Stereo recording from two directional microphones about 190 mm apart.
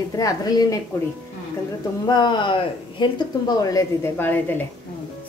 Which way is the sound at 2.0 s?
25° left (ahead or behind).